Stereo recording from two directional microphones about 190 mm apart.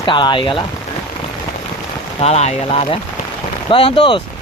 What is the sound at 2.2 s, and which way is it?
Speech, 35° left (ahead or behind).